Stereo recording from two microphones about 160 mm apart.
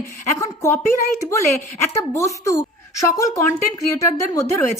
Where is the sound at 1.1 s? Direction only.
20° left (ahead or behind).